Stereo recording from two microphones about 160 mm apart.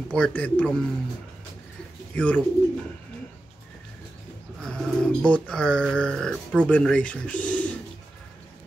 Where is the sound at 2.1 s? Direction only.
10° left (ahead or behind).